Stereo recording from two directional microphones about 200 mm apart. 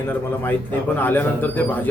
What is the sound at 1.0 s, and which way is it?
Speech, 10° left (ahead or behind).